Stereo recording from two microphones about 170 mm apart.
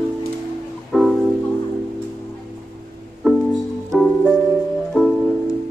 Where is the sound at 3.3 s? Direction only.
Centre (ahead or behind).